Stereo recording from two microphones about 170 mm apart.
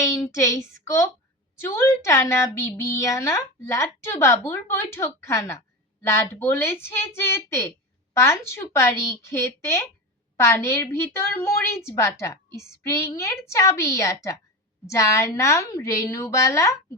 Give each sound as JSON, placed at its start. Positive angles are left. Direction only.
{"t": 0.0, "sound": "a woman's voice", "side_deg": 15}